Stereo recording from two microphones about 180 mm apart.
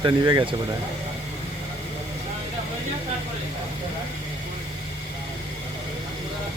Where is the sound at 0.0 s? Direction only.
25° right (ahead or behind).